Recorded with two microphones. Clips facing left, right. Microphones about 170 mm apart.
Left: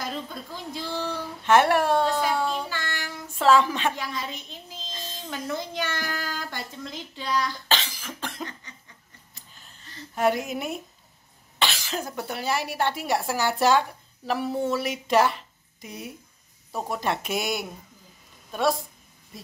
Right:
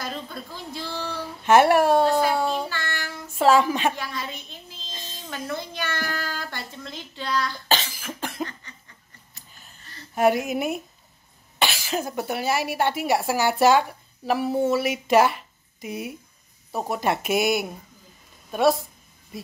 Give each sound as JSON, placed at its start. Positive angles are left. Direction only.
{"t": 0.0, "sound": "speech", "side_deg": 15}
{"t": 1.4, "sound": "speech", "side_deg": -10}
{"t": 2.7, "sound": "child singing", "side_deg": 15}
{"t": 3.3, "sound": "a sound", "side_deg": -10}
{"t": 3.9, "sound": "speech", "side_deg": 15}
{"t": 8.0, "sound": "cough", "side_deg": -10}
{"t": 10.1, "sound": "a woman's voice", "side_deg": -10}